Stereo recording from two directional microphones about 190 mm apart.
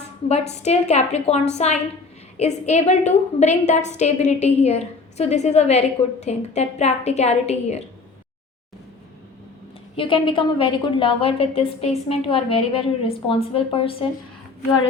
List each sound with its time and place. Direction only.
0.6 s a woman's voice: 35° left (ahead or behind)
9.9 s a woman's voice: 25° left (ahead or behind)